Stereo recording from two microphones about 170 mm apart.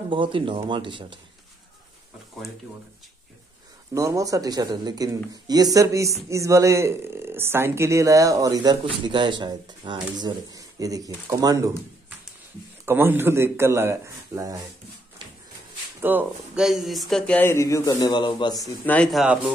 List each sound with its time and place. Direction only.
0.1 s speech: 30° right (ahead or behind)
3.9 s speech: 20° right (ahead or behind)
12.8 s speech: 15° right (ahead or behind)
16.0 s speech: 10° right (ahead or behind)
17.4 s speech: 15° left (ahead or behind)
18.6 s speech: 5° left (ahead or behind)